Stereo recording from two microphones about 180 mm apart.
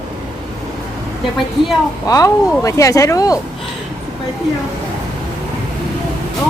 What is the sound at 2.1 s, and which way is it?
Speech, 20° left (ahead or behind).